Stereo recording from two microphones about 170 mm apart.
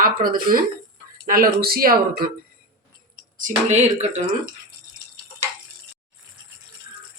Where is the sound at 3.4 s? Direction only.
45° right (ahead or behind).